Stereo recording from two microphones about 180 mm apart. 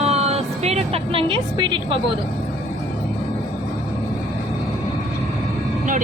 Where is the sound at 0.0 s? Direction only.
35° right (ahead or behind).